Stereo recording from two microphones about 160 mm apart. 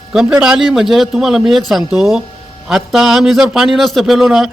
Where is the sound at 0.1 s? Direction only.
5° right (ahead or behind).